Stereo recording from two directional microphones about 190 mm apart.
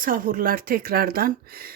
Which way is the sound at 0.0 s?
45° right (ahead or behind).